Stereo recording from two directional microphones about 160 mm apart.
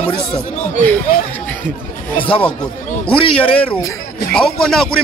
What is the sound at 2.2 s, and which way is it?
Speech, 10° left (ahead or behind).